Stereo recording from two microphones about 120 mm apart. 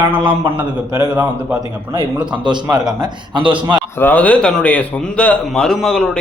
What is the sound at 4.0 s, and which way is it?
A man's voice, 15° left (ahead or behind).